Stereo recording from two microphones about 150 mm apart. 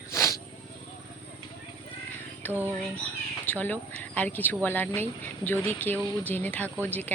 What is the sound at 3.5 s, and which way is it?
Speech, 10° left (ahead or behind).